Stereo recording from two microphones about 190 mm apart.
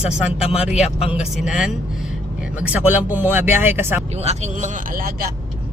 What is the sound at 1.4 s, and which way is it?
Speech, 5° right (ahead or behind).